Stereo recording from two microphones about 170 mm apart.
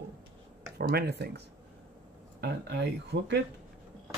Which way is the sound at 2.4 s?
85° right.